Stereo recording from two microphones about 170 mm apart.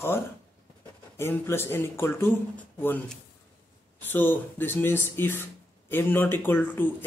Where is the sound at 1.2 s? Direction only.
15° left (ahead or behind).